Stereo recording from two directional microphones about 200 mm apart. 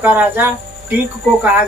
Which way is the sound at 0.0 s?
10° right (ahead or behind).